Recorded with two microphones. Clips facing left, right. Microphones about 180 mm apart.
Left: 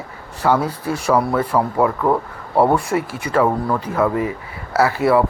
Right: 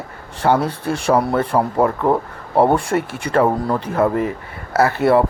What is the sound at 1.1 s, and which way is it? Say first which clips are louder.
Speech: right 1 dB; 30° right (ahead or behind).